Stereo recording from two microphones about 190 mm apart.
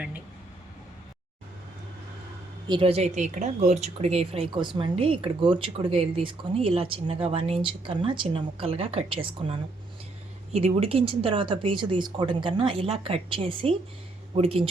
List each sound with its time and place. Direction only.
2.6 s speech: 25° right (ahead or behind)